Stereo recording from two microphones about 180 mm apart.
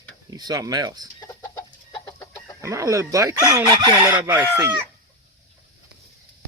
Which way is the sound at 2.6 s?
15° right (ahead or behind).